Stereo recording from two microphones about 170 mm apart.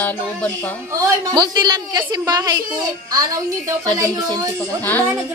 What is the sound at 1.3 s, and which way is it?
Speech, 25° right (ahead or behind).